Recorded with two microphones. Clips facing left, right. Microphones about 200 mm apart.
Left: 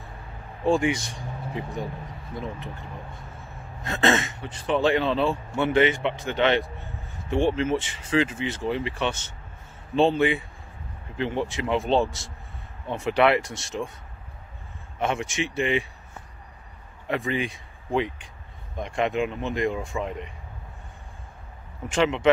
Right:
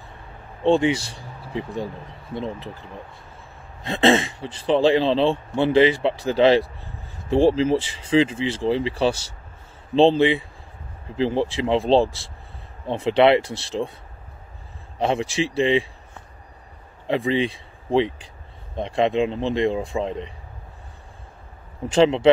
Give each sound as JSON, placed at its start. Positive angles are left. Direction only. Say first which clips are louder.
{"t": 0.7, "sound": "speech", "louder": "right 4 dB", "side_deg": -30}
{"t": 3.8, "sound": "a man's voice", "louder": "right 5 dB", "side_deg": -30}
{"t": 15.0, "sound": "a man's voice", "louder": "right 5 dB", "side_deg": -30}
{"t": 17.1, "sound": "speech", "louder": "right 6 dB", "side_deg": -30}
{"t": 21.9, "sound": "a man's voice", "louder": "right 6 dB", "side_deg": -30}